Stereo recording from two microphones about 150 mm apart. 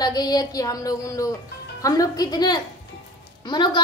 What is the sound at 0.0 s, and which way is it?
A woman's voice, 25° left (ahead or behind).